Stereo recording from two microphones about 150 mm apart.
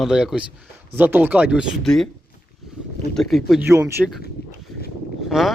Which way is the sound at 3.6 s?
20° right (ahead or behind).